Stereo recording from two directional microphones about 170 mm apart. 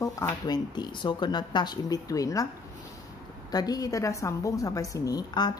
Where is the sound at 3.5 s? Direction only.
20° left (ahead or behind).